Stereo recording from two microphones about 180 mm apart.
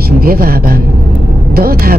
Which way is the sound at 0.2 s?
55° right (ahead or behind).